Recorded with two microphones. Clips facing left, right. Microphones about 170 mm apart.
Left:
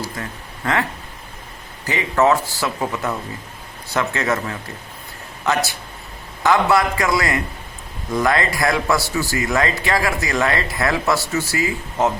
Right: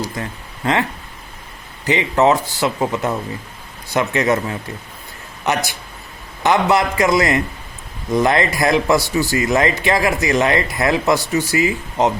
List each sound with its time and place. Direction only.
0.0 s speech: 20° right (ahead or behind)
1.9 s speech: 20° right (ahead or behind)